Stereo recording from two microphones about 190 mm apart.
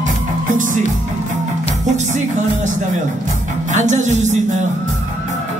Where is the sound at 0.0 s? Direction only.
40° right (ahead or behind).